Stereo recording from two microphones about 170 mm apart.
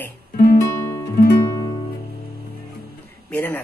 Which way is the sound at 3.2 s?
10° left (ahead or behind).